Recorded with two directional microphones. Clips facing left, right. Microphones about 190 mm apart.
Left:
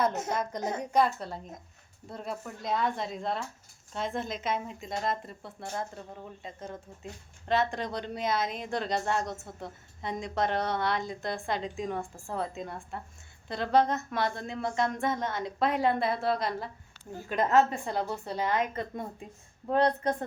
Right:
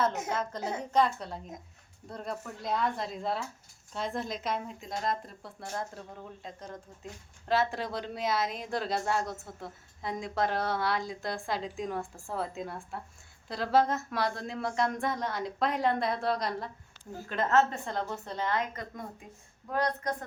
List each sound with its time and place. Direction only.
0.3 s a woman's voice: 15° left (ahead or behind)
17.2 s a woman's voice: 15° left (ahead or behind)